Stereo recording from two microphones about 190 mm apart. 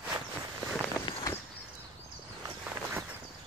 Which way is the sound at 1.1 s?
25° left (ahead or behind).